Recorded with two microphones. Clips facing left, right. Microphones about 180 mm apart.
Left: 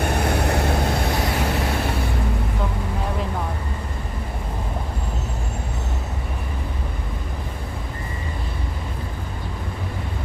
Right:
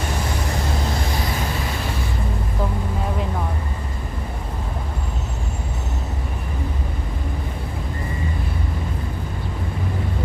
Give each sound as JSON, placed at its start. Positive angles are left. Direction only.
{"t": 0.0, "sound": "vehicle", "side_deg": 60}